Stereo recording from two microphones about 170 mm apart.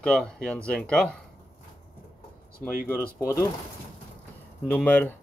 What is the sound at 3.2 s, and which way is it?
Speech, 20° left (ahead or behind).